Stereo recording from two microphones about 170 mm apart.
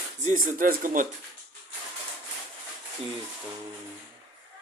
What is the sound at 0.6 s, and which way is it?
Speech, 55° right (ahead or behind).